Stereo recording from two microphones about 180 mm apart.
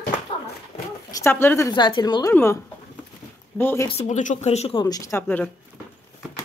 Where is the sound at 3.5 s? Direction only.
10° left (ahead or behind).